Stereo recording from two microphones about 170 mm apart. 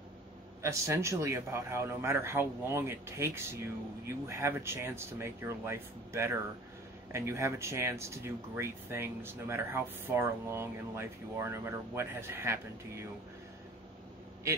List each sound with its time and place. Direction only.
0.6 s speech: 15° right (ahead or behind)